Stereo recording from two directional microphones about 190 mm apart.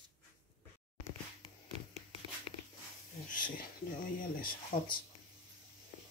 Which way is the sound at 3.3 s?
45° left (ahead or behind).